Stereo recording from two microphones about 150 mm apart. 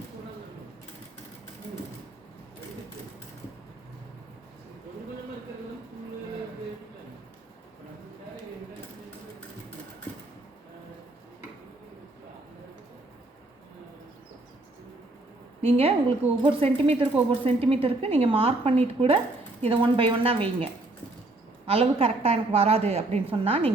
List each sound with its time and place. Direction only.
15.6 s speech: 40° right (ahead or behind)
21.7 s speech: 40° right (ahead or behind)